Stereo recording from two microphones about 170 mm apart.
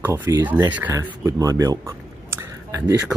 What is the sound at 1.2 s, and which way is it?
Speech, 20° right (ahead or behind).